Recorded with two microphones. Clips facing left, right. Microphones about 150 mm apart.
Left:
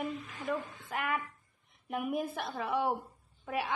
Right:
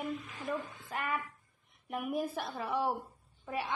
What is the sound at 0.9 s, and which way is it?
A woman's voice, centre (ahead or behind).